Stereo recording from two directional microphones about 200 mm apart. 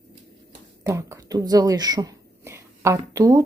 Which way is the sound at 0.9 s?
15° right (ahead or behind).